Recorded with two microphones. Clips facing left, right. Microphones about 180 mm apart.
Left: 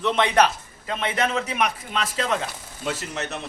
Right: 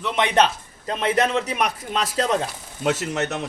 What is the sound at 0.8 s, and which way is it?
A man's voice, 35° right (ahead or behind).